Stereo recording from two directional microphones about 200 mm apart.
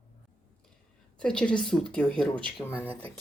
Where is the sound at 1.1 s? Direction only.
5° left (ahead or behind).